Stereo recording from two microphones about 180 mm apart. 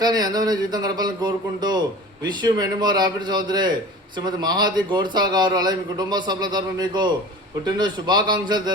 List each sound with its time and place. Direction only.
0.0 s a man's voice: 20° right (ahead or behind)